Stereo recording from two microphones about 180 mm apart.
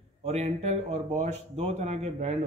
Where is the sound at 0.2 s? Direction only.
35° right (ahead or behind).